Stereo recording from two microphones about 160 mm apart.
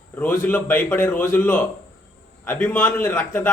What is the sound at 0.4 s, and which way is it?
A man's voice, 10° left (ahead or behind).